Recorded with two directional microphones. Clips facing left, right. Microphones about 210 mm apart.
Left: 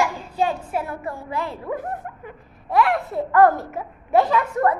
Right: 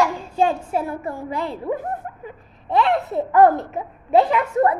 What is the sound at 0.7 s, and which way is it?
A child's voice, 25° right (ahead or behind).